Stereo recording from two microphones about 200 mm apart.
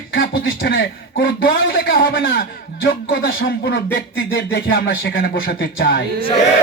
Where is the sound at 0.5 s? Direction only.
50° left (ahead or behind).